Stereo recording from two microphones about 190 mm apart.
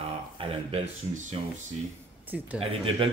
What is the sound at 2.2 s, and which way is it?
Speech, 10° right (ahead or behind).